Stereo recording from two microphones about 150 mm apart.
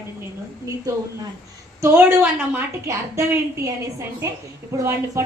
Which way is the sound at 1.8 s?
15° right (ahead or behind).